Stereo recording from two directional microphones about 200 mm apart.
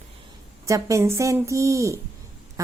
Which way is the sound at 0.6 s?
15° right (ahead or behind).